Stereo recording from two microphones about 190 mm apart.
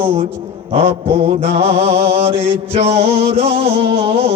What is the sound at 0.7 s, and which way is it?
Mantra, 30° right (ahead or behind).